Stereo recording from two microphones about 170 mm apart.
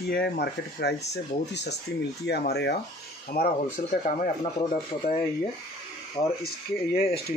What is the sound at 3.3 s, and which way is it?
Speech, 60° left (ahead or behind).